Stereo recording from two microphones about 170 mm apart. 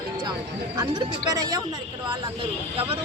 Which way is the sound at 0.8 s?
20° right (ahead or behind).